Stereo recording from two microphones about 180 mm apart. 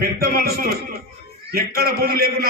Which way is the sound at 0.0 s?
55° right (ahead or behind).